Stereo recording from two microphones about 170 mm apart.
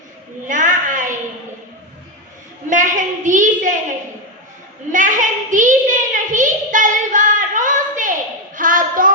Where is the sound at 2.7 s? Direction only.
50° right (ahead or behind).